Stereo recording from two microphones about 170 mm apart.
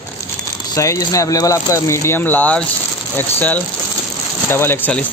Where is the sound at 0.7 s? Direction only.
20° left (ahead or behind).